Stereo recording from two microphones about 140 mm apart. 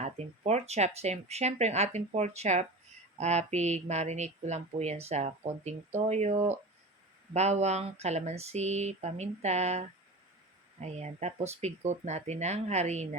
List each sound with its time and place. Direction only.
0.0 s speech: 50° right (ahead or behind)